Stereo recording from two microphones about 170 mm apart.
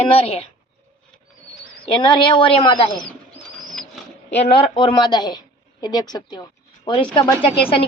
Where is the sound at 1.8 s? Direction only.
30° left (ahead or behind).